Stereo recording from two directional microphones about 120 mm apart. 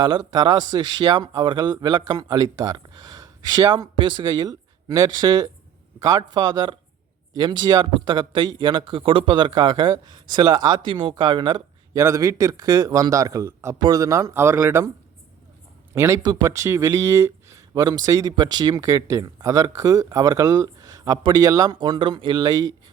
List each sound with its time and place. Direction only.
0.0 s speech: 35° right (ahead or behind)
11.9 s speech: 25° right (ahead or behind)
16.0 s speech: 25° right (ahead or behind)
16.2 s speech: 35° right (ahead or behind)
16.5 s speech: 25° right (ahead or behind)